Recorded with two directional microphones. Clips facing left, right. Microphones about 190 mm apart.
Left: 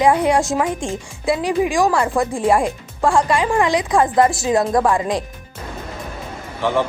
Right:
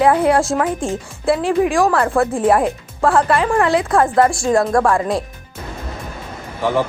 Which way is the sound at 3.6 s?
Centre (ahead or behind).